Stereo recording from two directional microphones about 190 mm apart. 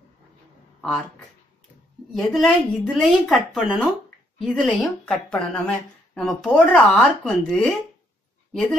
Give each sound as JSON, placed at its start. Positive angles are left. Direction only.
{"t": 0.7, "sound": "speech", "side_deg": 0}
{"t": 2.1, "sound": "speech", "side_deg": 0}